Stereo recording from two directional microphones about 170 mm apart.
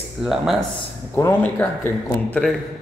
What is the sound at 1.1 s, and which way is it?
Speech, 15° left (ahead or behind).